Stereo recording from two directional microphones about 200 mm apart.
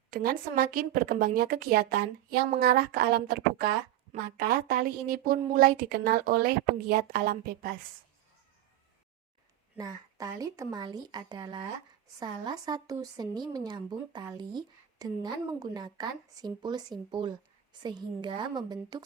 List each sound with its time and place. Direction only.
0.1 s speech: 45° right (ahead or behind)
9.7 s speech: 20° right (ahead or behind)